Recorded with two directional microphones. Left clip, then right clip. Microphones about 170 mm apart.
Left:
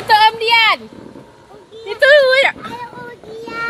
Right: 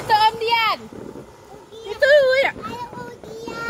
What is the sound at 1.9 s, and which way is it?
Speech, 25° left (ahead or behind).